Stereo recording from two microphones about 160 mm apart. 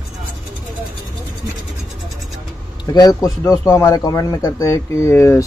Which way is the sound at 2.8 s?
25° left (ahead or behind).